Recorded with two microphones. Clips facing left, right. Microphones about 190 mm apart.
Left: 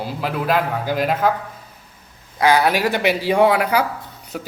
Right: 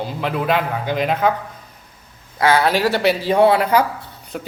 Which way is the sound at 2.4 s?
15° left (ahead or behind).